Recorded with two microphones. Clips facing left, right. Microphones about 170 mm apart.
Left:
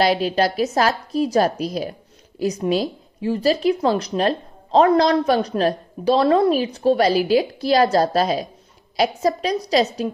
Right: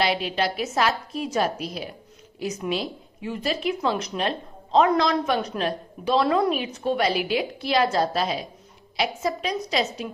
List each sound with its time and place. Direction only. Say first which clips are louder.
0.0 s speech: left 6 dB; 40° left (ahead or behind)